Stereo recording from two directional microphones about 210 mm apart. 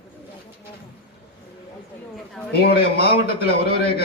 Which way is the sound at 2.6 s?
50° left (ahead or behind).